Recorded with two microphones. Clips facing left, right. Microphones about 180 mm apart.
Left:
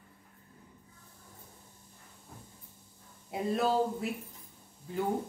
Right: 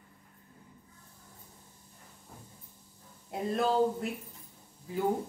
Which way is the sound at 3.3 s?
Centre (ahead or behind).